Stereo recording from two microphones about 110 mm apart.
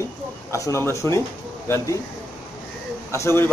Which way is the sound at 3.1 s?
25° left (ahead or behind).